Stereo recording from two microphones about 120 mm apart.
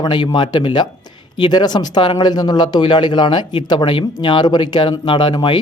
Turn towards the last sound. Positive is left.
turn(degrees=40)  # may be behind; listen again after turning